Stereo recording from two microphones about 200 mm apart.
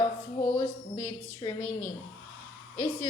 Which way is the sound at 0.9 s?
20° left (ahead or behind).